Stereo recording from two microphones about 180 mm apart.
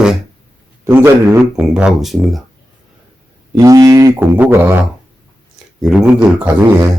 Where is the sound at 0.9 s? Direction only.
10° right (ahead or behind).